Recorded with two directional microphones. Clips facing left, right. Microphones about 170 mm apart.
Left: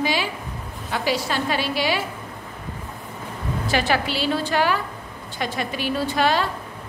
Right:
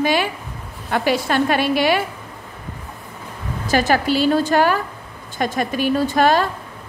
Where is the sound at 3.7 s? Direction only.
45° right (ahead or behind).